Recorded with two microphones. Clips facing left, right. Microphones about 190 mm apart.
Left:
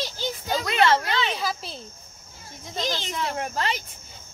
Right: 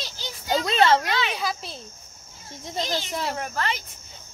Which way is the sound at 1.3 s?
Centre (ahead or behind).